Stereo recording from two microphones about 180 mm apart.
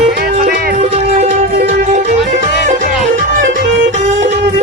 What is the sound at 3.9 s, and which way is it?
Music, 40° right (ahead or behind).